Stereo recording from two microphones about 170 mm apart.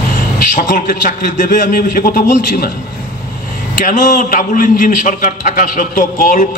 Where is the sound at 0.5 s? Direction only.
50° left (ahead or behind).